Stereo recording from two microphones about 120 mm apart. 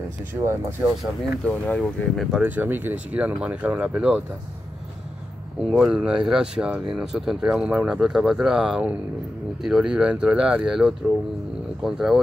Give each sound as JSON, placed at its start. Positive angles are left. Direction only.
{"t": 0.3, "sound": "speech", "side_deg": -25}
{"t": 1.4, "sound": "speech", "side_deg": 10}
{"t": 2.3, "sound": "speech", "side_deg": -15}
{"t": 5.7, "sound": "speech", "side_deg": -5}